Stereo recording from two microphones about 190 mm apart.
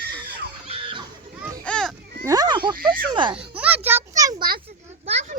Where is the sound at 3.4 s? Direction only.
5° right (ahead or behind).